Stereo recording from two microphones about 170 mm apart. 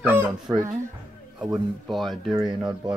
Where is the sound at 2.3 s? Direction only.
20° right (ahead or behind).